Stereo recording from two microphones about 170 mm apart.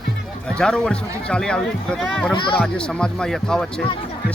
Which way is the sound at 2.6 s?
5° left (ahead or behind).